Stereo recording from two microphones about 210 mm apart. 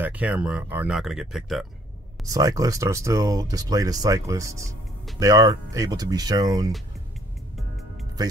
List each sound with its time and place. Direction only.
0.0 s speech: 5° right (ahead or behind)
2.2 s speech: 15° right (ahead or behind)